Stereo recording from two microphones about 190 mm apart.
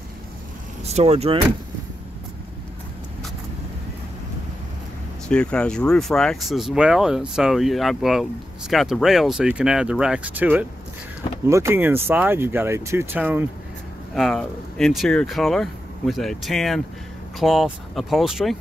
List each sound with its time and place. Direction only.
0.8 s speech: 35° right (ahead or behind)
5.3 s speech: 5° left (ahead or behind)
14.1 s speech: centre (ahead or behind)